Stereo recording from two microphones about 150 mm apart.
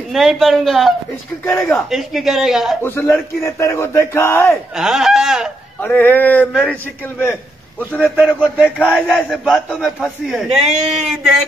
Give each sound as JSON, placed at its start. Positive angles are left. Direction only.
{"t": 0.1, "sound": "speech", "side_deg": 0}
{"t": 1.4, "sound": "speech", "side_deg": 15}
{"t": 1.9, "sound": "speech", "side_deg": 0}
{"t": 2.8, "sound": "speech", "side_deg": 15}
{"t": 4.7, "sound": "speech", "side_deg": 0}
{"t": 5.8, "sound": "speech", "side_deg": 10}
{"t": 8.2, "sound": "speech", "side_deg": -10}
{"t": 8.6, "sound": "speech", "side_deg": 10}
{"t": 9.0, "sound": "speech", "side_deg": -5}